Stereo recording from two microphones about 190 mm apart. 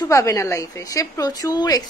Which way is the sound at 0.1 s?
15° left (ahead or behind).